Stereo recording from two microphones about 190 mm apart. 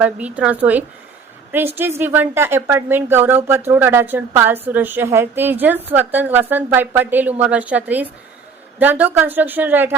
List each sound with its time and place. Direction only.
0.0 s a woman's voice: 5° right (ahead or behind)